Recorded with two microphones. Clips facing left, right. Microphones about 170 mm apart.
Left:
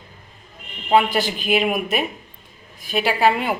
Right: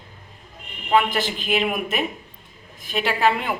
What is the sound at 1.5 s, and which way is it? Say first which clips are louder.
A woman's voice: left 3 dB; 10° left (ahead or behind).